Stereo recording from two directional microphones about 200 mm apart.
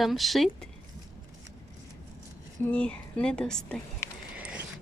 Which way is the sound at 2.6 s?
5° left (ahead or behind).